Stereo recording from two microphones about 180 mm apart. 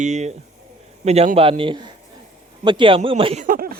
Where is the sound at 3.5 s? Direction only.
55° right (ahead or behind).